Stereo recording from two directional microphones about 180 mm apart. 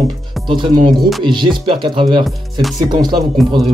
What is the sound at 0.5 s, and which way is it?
Speech, 25° right (ahead or behind).